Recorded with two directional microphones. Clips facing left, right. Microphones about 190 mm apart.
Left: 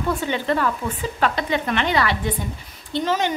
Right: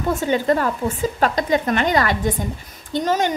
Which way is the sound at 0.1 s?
45° right (ahead or behind).